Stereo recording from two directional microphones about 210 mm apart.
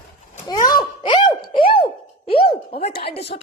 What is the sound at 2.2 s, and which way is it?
Speech, 25° left (ahead or behind).